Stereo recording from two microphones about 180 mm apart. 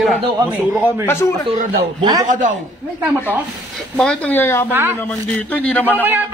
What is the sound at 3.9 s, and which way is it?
Speech, 5° left (ahead or behind).